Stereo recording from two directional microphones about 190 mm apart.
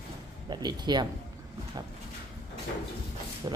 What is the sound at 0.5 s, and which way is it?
Speech, 20° right (ahead or behind).